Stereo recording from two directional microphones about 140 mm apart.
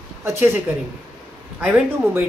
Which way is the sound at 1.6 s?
10° right (ahead or behind).